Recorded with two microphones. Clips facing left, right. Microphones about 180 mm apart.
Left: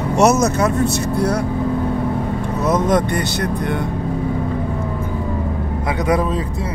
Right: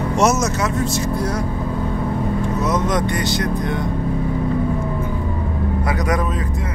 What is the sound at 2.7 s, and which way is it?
Speech, 55° left (ahead or behind).